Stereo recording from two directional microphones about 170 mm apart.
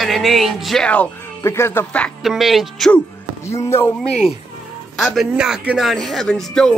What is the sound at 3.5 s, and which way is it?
Speech, 15° left (ahead or behind).